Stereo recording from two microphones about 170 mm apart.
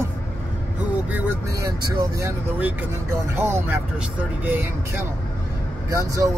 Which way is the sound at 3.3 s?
15° right (ahead or behind).